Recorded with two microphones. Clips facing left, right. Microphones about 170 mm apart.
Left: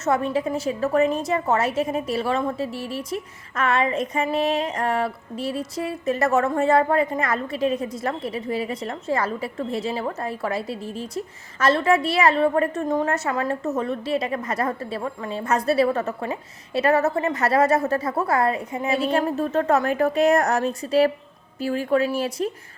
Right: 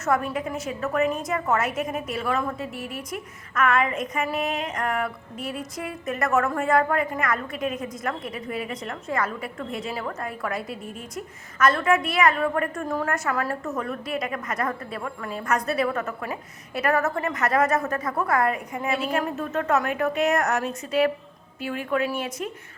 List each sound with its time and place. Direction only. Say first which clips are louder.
0.0 s a woman's voice: left 3 dB; 25° left (ahead or behind)